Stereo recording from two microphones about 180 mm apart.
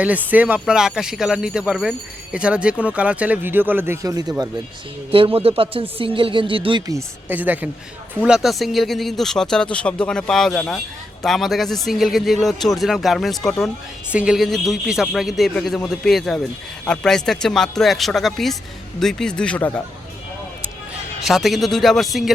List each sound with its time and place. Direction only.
0.0 s speech: 10° right (ahead or behind)
5.1 s a woman's voice: 30° right (ahead or behind)
7.3 s speech: 10° right (ahead or behind); by 19.8 s 10° left (ahead or behind)
21.2 s speech: centre (ahead or behind)